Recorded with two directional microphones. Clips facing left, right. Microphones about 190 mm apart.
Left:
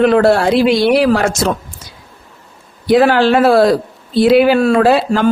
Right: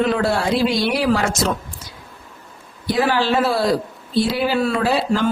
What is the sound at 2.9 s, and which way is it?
Speech, 70° left (ahead or behind).